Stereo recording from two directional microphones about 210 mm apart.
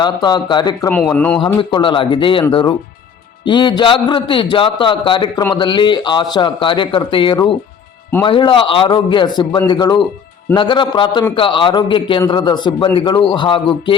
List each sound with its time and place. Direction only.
0.0 s a man's voice: 20° left (ahead or behind)
0.9 s a man's voice: 5° left (ahead or behind)
1.7 s a man's voice: 20° left (ahead or behind)